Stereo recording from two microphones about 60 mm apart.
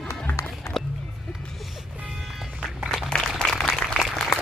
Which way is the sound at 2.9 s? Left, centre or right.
Centre.